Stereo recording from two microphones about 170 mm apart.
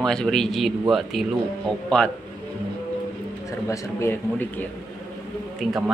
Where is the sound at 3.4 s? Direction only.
20° left (ahead or behind).